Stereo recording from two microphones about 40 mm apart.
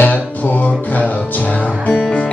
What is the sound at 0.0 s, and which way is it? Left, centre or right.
Music, left.